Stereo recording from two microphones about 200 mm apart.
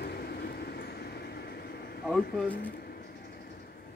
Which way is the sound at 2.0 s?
5° right (ahead or behind).